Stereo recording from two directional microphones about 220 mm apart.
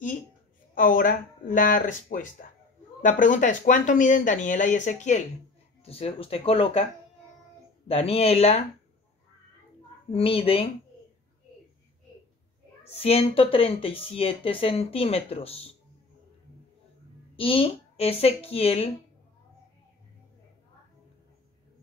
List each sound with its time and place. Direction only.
0.7 s speech: 40° left (ahead or behind)
7.9 s speech: 25° left (ahead or behind)
10.1 s speech: 25° left (ahead or behind)
12.8 s speech: 25° left (ahead or behind)
17.4 s speech: 25° left (ahead or behind)